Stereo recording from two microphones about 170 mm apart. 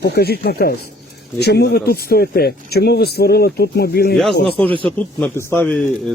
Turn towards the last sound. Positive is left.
turn(degrees=10)  # may be behind; listen again after turning